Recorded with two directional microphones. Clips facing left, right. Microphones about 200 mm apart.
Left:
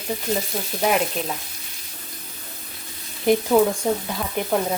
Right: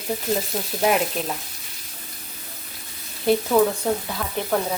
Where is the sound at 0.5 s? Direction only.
Centre (ahead or behind).